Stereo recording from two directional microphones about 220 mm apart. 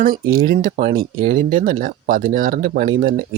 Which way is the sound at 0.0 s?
40° right (ahead or behind).